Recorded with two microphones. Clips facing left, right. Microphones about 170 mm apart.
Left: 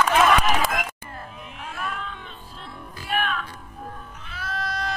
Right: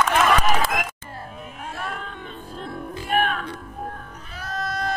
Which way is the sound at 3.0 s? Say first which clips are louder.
Right 3 dB; 50° right (ahead or behind).